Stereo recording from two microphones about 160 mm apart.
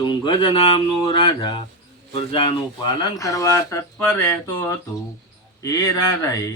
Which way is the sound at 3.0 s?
20° left (ahead or behind).